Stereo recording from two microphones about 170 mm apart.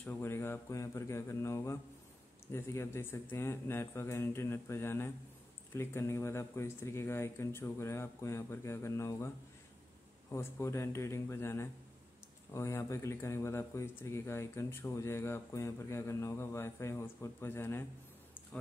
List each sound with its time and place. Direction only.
0.0 s speech: 15° left (ahead or behind)
10.3 s speech: 15° left (ahead or behind)